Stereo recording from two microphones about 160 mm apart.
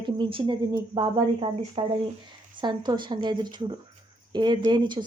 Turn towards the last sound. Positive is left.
turn(degrees=-30)  # may be behind; listen again after turning